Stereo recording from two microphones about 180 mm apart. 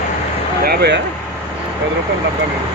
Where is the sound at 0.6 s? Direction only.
65° right (ahead or behind).